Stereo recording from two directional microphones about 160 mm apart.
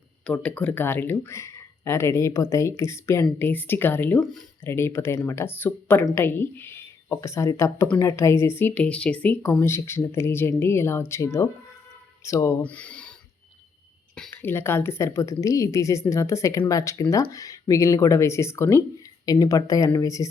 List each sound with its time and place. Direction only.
0.3 s speech: 10° left (ahead or behind)
14.2 s a woman's voice: 15° left (ahead or behind)